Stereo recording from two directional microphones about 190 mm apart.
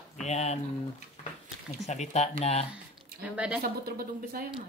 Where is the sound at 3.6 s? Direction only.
50° right (ahead or behind).